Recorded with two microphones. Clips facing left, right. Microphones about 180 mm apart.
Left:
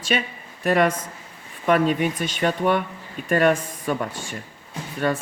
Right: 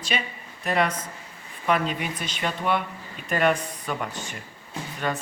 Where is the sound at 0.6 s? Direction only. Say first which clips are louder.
Left 5 dB; 50° left (ahead or behind).